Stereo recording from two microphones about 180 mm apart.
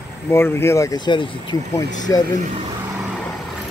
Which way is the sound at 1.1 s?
25° left (ahead or behind).